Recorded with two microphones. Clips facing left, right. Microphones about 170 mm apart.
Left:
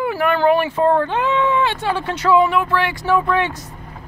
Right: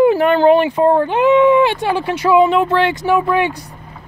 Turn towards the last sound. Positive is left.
turn(degrees=-10)  # may be behind; listen again after turning